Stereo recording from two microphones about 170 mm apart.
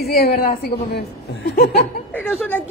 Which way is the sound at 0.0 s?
65° left (ahead or behind).